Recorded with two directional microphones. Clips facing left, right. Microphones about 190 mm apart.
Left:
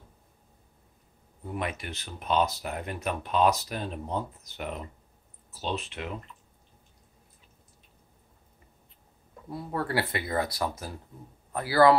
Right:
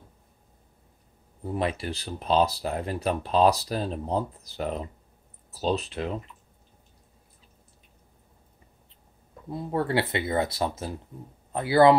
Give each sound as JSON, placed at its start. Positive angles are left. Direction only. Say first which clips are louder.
{"t": 1.4, "sound": "speech", "louder": "right 5 dB", "side_deg": -30}
{"t": 9.5, "sound": "speech", "louder": "right 4 dB", "side_deg": -25}